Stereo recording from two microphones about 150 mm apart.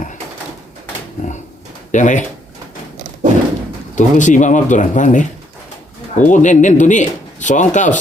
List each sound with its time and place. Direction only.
1.9 s speech: 55° left (ahead or behind)
3.9 s speech: 55° left (ahead or behind)